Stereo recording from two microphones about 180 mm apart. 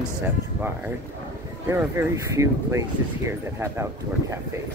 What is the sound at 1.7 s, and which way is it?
Speech, 15° right (ahead or behind).